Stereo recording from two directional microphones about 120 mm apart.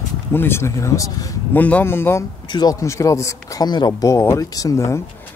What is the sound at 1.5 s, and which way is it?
Speech, 15° left (ahead or behind).